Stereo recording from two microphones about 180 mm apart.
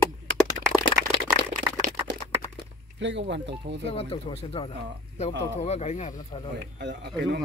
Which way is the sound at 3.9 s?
35° left (ahead or behind).